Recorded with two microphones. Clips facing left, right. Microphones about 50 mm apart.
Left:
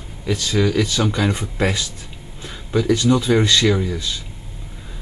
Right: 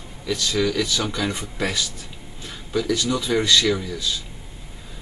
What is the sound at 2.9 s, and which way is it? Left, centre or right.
Speech, left.